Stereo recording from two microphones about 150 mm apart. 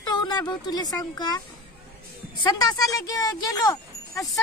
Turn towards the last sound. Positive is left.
turn(degrees=25)  # may be behind; listen again after turning